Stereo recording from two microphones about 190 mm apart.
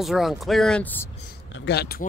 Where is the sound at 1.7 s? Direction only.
55° left (ahead or behind).